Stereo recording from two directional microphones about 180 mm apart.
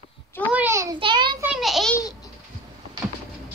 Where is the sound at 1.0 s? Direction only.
25° right (ahead or behind).